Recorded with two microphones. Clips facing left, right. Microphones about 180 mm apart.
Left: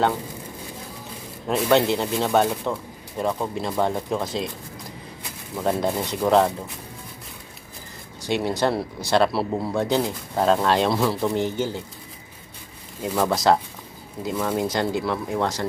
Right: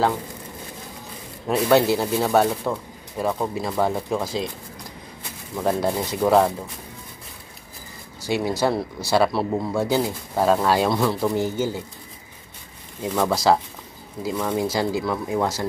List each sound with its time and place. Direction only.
1.5 s speech: 5° right (ahead or behind)
5.6 s speech: 5° right (ahead or behind)
8.3 s speech: 5° right (ahead or behind)
13.2 s speech: centre (ahead or behind)